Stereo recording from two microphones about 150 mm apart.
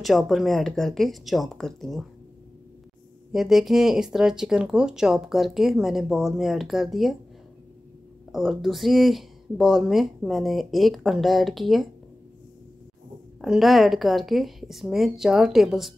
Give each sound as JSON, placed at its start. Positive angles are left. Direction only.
{"t": 0.0, "sound": "speech", "side_deg": 0}
{"t": 3.3, "sound": "speech", "side_deg": 0}
{"t": 8.3, "sound": "speech", "side_deg": 0}
{"t": 13.4, "sound": "speech", "side_deg": 0}